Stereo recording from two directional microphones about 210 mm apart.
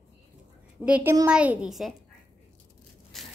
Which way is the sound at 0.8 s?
5° right (ahead or behind).